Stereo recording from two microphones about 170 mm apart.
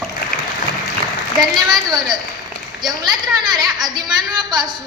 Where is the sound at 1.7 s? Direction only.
25° right (ahead or behind).